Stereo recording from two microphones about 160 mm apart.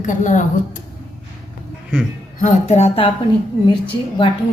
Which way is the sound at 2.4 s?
45° left (ahead or behind).